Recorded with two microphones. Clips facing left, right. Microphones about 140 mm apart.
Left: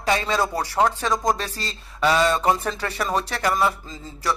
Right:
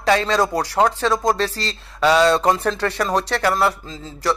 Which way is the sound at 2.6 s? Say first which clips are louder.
Right 5 dB; 70° right (ahead or behind).